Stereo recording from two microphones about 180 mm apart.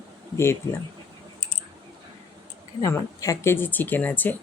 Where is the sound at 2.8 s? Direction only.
15° left (ahead or behind).